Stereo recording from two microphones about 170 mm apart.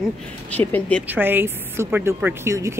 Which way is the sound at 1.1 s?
10° right (ahead or behind).